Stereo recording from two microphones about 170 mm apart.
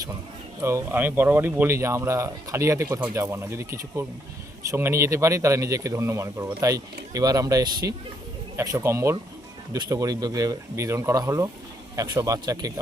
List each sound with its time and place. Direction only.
0.6 s speech: 15° right (ahead or behind)